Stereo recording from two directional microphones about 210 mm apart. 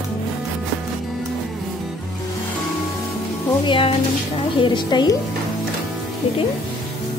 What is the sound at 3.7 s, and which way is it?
A woman's voice, 25° left (ahead or behind).